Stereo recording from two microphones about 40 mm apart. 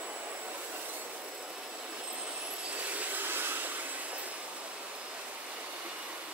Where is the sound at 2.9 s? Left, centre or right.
Right.